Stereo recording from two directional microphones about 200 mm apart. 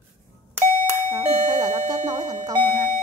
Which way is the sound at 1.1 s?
20° right (ahead or behind).